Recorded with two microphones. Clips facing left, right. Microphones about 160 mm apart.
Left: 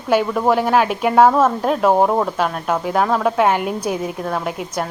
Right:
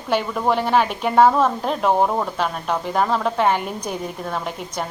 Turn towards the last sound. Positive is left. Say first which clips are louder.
# left 4 dB
turn(degrees=5)  # may be behind; listen again after turning